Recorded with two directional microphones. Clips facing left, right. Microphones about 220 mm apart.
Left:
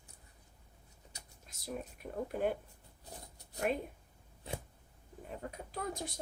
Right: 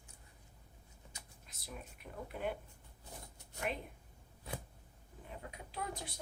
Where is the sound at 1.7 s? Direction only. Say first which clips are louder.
Left 8 dB; 45° left (ahead or behind).